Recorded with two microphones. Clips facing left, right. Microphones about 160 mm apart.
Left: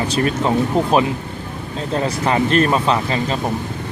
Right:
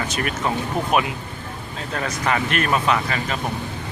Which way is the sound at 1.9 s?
30° left (ahead or behind).